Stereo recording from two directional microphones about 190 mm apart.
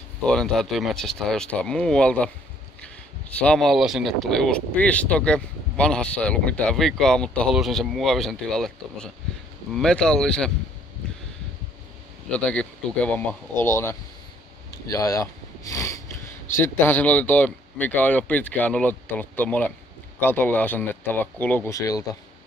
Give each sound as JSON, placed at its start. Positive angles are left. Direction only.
{"t": 0.2, "sound": "speech", "side_deg": 5}
{"t": 12.3, "sound": "speech", "side_deg": 5}